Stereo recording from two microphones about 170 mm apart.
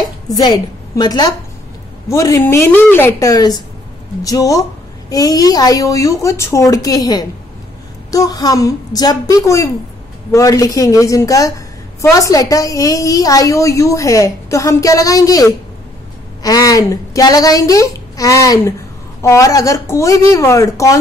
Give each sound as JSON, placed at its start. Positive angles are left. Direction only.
{"t": 0.3, "sound": "a woman's voice", "side_deg": 25}